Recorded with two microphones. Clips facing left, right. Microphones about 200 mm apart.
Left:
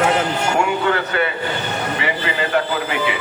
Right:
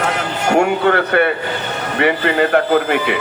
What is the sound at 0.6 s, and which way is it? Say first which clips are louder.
Speech: right 7 dB; 55° right (ahead or behind).